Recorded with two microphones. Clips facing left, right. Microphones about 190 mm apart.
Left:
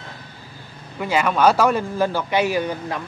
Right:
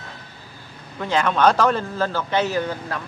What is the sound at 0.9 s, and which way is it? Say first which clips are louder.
A man's voice: left 1 dB; 10° left (ahead or behind).